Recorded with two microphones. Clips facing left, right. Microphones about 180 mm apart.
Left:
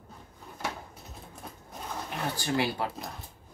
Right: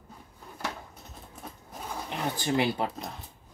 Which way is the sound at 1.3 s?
5° right (ahead or behind).